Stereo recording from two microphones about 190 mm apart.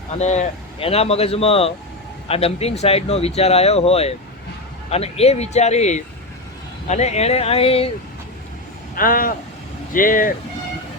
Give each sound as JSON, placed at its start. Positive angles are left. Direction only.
{"t": 0.2, "sound": "speech", "side_deg": 35}
{"t": 9.0, "sound": "speech", "side_deg": 45}